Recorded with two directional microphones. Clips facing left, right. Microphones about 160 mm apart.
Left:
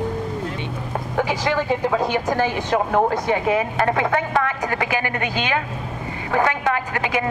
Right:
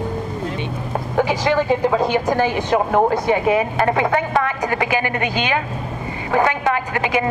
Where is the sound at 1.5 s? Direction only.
20° right (ahead or behind).